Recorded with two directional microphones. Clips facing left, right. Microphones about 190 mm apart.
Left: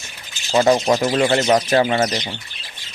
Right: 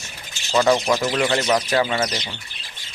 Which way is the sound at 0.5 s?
35° left (ahead or behind).